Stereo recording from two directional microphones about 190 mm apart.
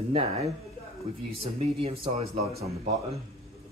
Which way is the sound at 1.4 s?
30° right (ahead or behind).